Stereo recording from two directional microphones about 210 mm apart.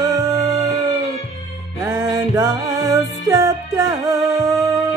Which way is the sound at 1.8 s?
15° right (ahead or behind).